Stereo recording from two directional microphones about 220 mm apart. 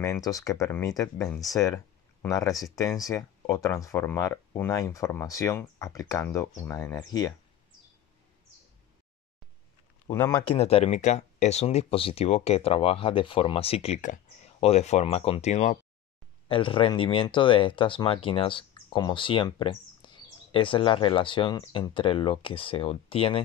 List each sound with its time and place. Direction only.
0.0 s speech: 15° left (ahead or behind)
10.0 s speech: 10° left (ahead or behind)
10.5 s speech: 25° left (ahead or behind)